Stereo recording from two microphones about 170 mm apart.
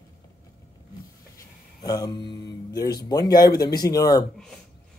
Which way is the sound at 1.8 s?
25° left (ahead or behind).